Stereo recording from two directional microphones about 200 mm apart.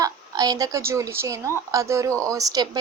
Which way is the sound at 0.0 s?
20° right (ahead or behind).